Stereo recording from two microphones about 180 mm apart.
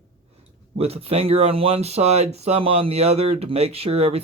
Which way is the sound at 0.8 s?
35° right (ahead or behind).